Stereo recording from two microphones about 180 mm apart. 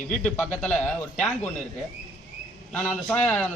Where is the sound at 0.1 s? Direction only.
5° left (ahead or behind).